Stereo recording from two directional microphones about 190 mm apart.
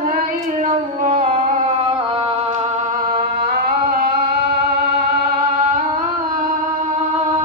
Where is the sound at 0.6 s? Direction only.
35° right (ahead or behind).